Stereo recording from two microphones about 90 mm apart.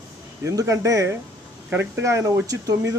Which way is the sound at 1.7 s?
25° right (ahead or behind).